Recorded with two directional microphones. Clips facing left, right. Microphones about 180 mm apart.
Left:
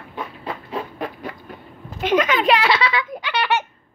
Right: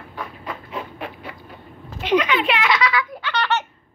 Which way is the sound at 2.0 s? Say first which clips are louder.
Left 2 dB; 45° left (ahead or behind).